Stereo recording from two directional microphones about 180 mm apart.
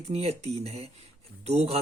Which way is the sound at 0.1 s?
35° right (ahead or behind).